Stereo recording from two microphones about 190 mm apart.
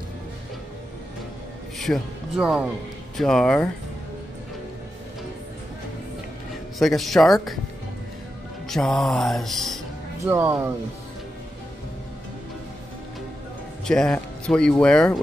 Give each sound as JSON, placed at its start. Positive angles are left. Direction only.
{"t": 1.8, "sound": "speech", "side_deg": 0}
{"t": 6.8, "sound": "speech", "side_deg": 0}
{"t": 8.6, "sound": "speech", "side_deg": 0}
{"t": 10.2, "sound": "speech", "side_deg": -15}
{"t": 13.8, "sound": "speech", "side_deg": 5}